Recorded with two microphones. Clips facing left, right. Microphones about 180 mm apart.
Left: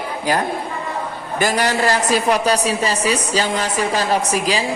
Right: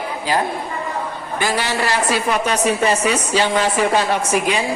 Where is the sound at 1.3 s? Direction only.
45° left (ahead or behind).